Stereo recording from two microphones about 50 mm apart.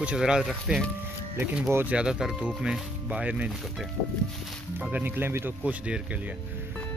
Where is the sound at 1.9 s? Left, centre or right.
Centre.